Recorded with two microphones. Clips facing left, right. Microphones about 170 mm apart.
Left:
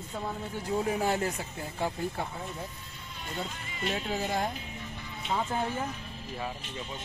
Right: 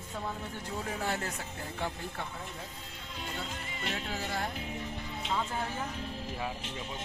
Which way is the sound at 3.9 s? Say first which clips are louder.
Left 6 dB; 20° left (ahead or behind).